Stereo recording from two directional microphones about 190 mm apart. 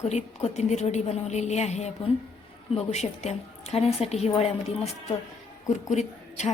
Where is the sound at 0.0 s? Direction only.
35° left (ahead or behind).